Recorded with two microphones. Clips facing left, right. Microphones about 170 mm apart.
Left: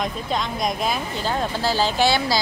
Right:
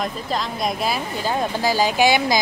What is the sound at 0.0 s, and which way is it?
Speech, centre (ahead or behind).